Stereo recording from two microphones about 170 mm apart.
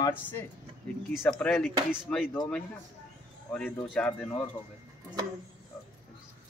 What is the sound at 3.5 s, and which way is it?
Speech, 5° left (ahead or behind).